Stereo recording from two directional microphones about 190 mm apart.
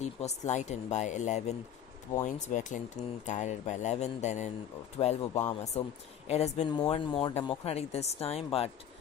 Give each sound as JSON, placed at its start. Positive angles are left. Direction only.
{"t": 0.0, "sound": "speech", "side_deg": 35}